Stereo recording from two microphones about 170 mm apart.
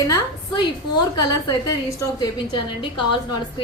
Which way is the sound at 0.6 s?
25° left (ahead or behind).